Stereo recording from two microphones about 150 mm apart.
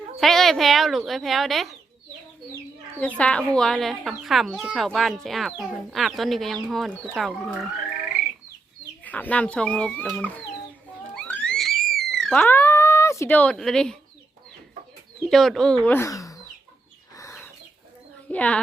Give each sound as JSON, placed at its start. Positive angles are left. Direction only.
{"t": 0.2, "sound": "speech", "side_deg": 0}
{"t": 3.2, "sound": "speech", "side_deg": 5}
{"t": 9.0, "sound": "speech", "side_deg": 10}
{"t": 11.1, "sound": "a sound", "side_deg": 10}
{"t": 12.1, "sound": "speech", "side_deg": 5}
{"t": 15.2, "sound": "speech", "side_deg": 0}
{"t": 17.2, "sound": "chicken", "side_deg": 20}
{"t": 18.3, "sound": "speech", "side_deg": 10}